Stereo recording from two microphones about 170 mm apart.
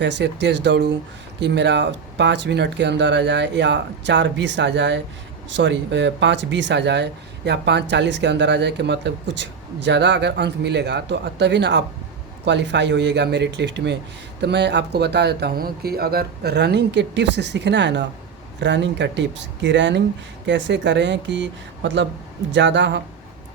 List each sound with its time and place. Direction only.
0.0 s speech: 90° right